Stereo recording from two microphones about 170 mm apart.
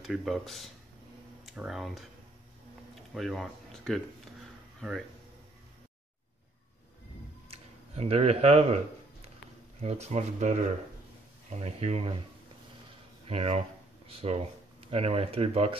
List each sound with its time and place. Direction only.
0.0 s speech: centre (ahead or behind)
3.2 s speech: centre (ahead or behind)
7.5 s a sound: 35° right (ahead or behind)
9.8 s speech: 40° right (ahead or behind)
13.3 s speech: 40° right (ahead or behind)